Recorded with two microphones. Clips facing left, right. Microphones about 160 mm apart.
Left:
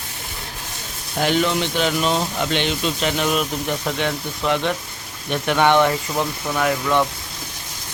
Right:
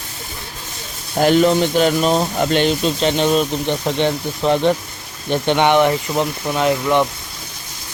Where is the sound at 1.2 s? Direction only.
40° right (ahead or behind).